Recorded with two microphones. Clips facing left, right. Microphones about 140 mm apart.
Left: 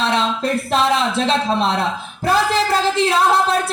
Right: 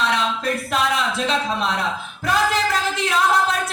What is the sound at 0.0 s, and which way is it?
A man's voice, 30° left (ahead or behind).